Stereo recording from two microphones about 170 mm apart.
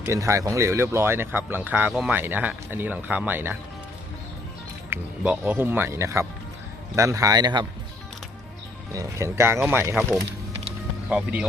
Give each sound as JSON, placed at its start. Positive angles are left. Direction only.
{"t": 0.0, "sound": "speech", "side_deg": -15}
{"t": 4.9, "sound": "a man's voice", "side_deg": -10}
{"t": 8.9, "sound": "speech", "side_deg": -15}
{"t": 11.1, "sound": "speech", "side_deg": -10}